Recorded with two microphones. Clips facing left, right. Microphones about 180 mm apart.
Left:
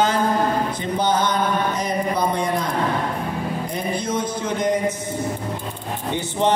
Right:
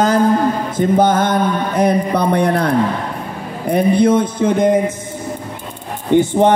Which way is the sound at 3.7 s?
60° right (ahead or behind).